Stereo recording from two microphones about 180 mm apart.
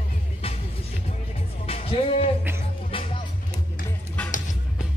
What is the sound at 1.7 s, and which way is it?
Speech, 35° left (ahead or behind).